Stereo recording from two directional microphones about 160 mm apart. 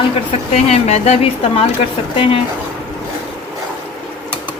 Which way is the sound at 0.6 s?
40° left (ahead or behind).